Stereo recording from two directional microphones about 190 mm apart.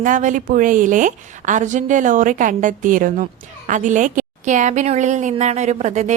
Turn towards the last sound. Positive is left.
turn(degrees=-40)  # may be behind; listen again after turning